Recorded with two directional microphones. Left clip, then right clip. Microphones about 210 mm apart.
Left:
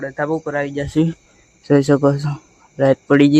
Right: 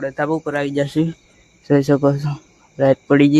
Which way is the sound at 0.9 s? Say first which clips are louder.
Left 2 dB; 10° left (ahead or behind).